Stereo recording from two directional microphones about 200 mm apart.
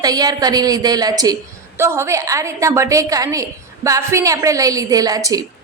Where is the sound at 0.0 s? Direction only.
20° right (ahead or behind).